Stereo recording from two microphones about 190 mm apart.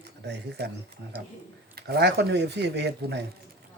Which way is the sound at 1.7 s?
60° right (ahead or behind).